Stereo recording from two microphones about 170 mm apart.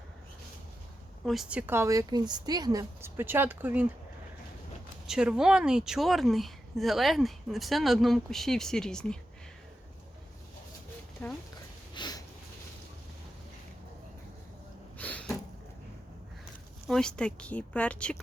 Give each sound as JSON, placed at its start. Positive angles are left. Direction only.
{"t": 1.2, "sound": "speech", "side_deg": 0}
{"t": 5.0, "sound": "a woman's voice", "side_deg": -5}
{"t": 11.2, "sound": "speech", "side_deg": 10}
{"t": 11.9, "sound": "a sound", "side_deg": 25}
{"t": 14.9, "sound": "a sound", "side_deg": 10}
{"t": 16.8, "sound": "speech", "side_deg": 5}